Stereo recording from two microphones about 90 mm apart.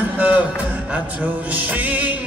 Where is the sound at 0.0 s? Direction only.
15° right (ahead or behind).